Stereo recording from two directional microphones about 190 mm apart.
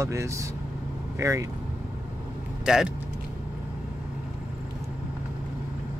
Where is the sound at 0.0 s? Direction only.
15° right (ahead or behind).